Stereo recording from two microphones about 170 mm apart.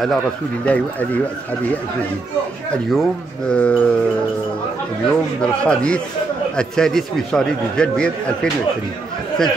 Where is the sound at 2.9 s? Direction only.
5° left (ahead or behind).